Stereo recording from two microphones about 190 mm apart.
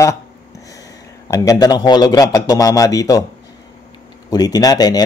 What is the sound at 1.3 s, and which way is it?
Speech, 20° left (ahead or behind).